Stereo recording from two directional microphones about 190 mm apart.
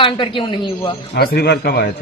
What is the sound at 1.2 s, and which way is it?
Speech, 60° left (ahead or behind).